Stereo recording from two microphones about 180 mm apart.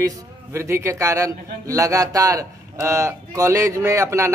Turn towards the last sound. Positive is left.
turn(degrees=-15)  # may be behind; listen again after turning